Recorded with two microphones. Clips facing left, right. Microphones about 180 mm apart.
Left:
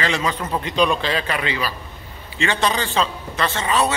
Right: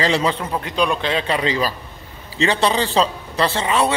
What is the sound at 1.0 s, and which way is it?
A man's voice, 25° right (ahead or behind).